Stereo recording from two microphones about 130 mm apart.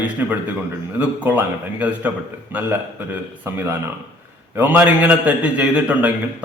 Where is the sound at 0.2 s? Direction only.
15° right (ahead or behind).